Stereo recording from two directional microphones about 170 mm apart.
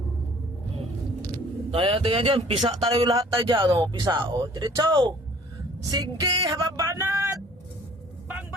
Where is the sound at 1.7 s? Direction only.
35° right (ahead or behind).